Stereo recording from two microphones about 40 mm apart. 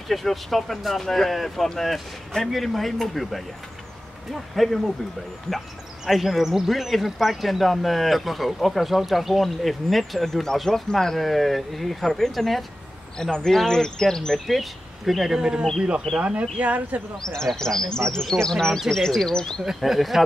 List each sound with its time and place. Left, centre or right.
0.1 s speech: centre
11.1 s speech: centre
13.2 s speech: centre
14.5 s speech: centre
15.3 s a man's voice: centre
16.2 s speech: right
17.6 s speech: centre
19.8 s speech: centre